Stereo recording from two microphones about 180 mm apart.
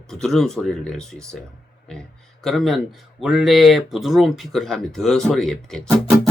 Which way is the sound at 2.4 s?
Centre (ahead or behind).